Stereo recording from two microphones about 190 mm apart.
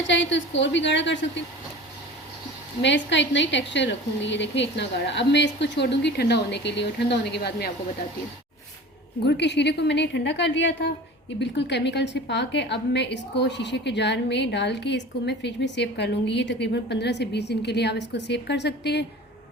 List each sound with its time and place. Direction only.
0.1 s a woman's voice: 75° left (ahead or behind)
2.8 s a woman's voice: 70° left (ahead or behind)
9.2 s a woman's voice: 60° left (ahead or behind)